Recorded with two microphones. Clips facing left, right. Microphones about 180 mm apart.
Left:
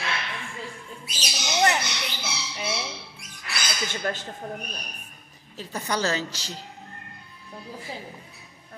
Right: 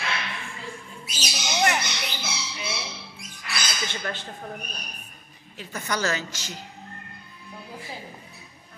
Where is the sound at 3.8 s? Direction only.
45° left (ahead or behind).